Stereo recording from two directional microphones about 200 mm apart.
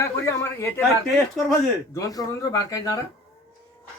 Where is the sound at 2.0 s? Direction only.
15° left (ahead or behind).